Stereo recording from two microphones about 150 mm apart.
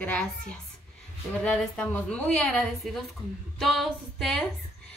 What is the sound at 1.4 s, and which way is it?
Speech, 10° left (ahead or behind).